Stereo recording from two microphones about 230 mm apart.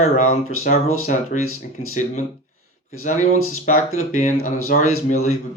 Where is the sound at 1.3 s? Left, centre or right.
Left.